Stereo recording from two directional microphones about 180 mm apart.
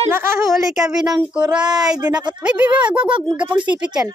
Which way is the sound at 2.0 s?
25° right (ahead or behind).